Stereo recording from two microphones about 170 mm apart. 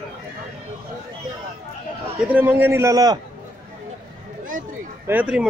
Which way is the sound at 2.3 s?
10° right (ahead or behind).